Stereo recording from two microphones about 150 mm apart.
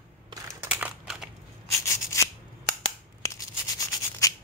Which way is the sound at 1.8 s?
20° left (ahead or behind).